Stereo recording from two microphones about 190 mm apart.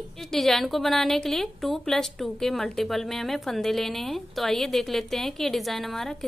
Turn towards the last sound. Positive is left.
turn(degrees=0)  # may be behind; listen again after turning